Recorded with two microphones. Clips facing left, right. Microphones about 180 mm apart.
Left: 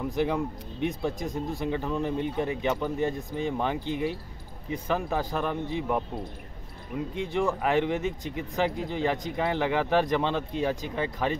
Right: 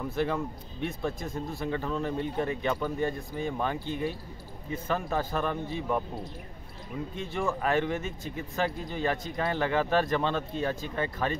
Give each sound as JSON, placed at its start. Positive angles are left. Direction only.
{"t": 0.0, "sound": "speech", "side_deg": 15}
{"t": 7.2, "sound": "speech", "side_deg": 15}